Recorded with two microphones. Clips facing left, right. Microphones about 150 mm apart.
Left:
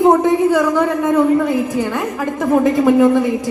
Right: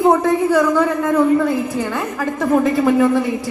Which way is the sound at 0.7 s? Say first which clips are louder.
Left 1 dB; 20° left (ahead or behind).